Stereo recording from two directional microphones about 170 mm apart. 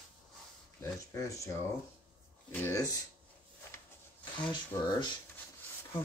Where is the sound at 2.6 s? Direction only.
20° left (ahead or behind).